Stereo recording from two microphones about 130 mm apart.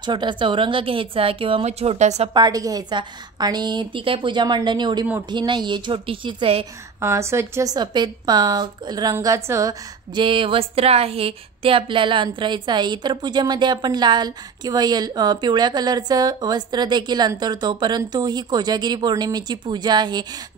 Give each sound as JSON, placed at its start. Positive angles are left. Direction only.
{"t": 0.0, "sound": "speech", "side_deg": -35}
{"t": 2.3, "sound": "a woman's voice", "side_deg": -30}
{"t": 7.0, "sound": "a woman's voice", "side_deg": -20}
{"t": 10.1, "sound": "a woman's voice", "side_deg": -40}